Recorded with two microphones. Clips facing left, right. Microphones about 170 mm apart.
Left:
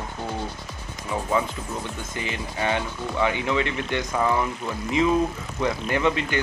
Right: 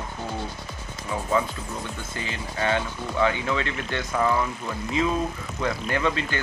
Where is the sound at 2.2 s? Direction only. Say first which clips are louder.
Left 1 dB; 15° left (ahead or behind).